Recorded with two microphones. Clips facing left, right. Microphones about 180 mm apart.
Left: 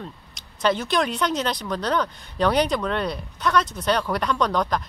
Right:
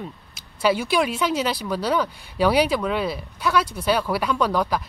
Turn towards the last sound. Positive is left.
turn(degrees=-5)  # may be behind; listen again after turning